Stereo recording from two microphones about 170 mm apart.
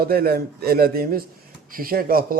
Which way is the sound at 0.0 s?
60° right (ahead or behind).